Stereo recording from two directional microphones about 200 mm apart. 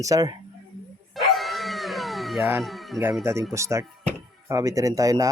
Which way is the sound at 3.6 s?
15° right (ahead or behind).